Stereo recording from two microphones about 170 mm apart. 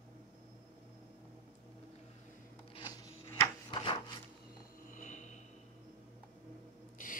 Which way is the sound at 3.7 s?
30° left (ahead or behind).